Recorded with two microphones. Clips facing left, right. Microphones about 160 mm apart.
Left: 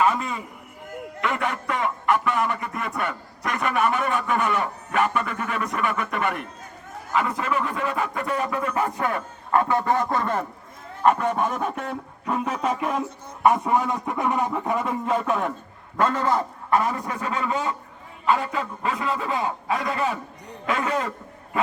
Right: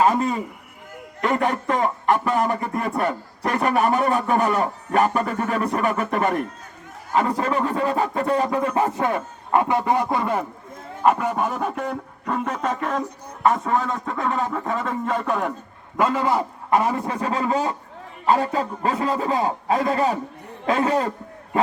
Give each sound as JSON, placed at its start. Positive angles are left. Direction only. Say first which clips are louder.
{"t": 0.0, "sound": "a man's voice", "louder": "right 4 dB", "side_deg": -35}
{"t": 16.0, "sound": "a man's voice", "louder": "right 2 dB", "side_deg": -10}
{"t": 17.0, "sound": "a man's voice", "louder": "right 4 dB", "side_deg": -30}